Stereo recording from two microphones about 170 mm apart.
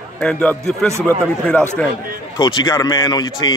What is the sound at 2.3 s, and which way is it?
Speech, 25° left (ahead or behind).